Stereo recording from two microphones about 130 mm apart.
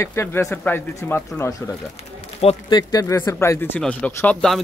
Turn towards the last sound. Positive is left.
turn(degrees=5)  # may be behind; listen again after turning